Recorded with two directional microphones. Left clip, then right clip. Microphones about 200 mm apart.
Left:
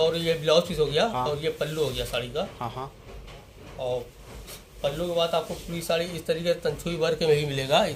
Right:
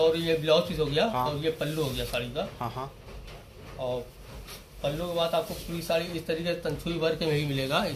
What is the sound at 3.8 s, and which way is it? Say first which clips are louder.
A man's voice: left 3 dB; 50° left (ahead or behind).